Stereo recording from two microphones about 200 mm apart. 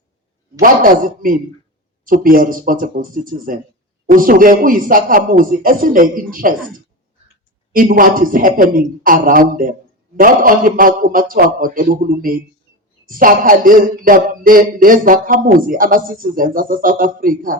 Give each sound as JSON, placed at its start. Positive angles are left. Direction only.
{"t": 0.6, "sound": "speech", "side_deg": -45}
{"t": 7.7, "sound": "speech", "side_deg": -45}